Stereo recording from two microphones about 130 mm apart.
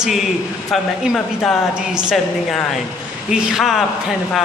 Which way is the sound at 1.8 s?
5° right (ahead or behind).